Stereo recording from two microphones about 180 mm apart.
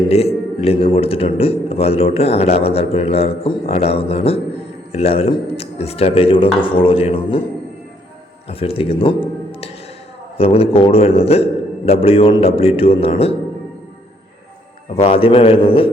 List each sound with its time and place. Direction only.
0.1 s a man's voice: 35° left (ahead or behind)
8.4 s a man's voice: 35° left (ahead or behind)
15.0 s a man's voice: 30° left (ahead or behind)